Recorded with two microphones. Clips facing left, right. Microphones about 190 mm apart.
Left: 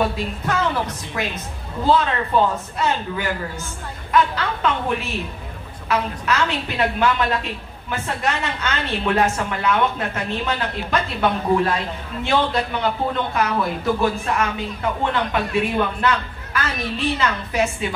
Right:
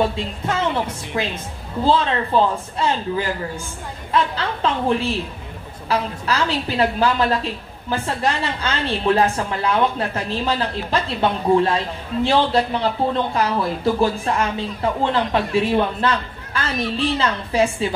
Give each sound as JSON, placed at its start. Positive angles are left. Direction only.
{"t": 0.0, "sound": "a woman's voice", "side_deg": -25}